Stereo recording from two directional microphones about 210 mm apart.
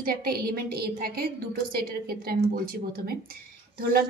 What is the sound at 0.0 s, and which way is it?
A woman's voice, 45° right (ahead or behind).